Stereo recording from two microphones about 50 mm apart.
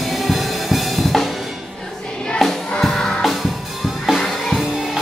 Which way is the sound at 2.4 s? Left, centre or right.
Centre.